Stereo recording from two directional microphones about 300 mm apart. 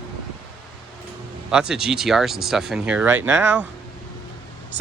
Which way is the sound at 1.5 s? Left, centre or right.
Centre.